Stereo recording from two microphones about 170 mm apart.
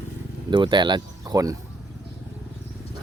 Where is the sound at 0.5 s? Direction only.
25° right (ahead or behind).